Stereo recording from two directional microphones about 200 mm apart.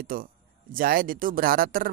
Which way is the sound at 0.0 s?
45° right (ahead or behind).